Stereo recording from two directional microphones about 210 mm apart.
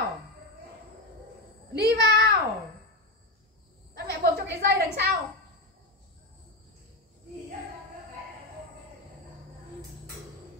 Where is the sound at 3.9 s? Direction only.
50° right (ahead or behind).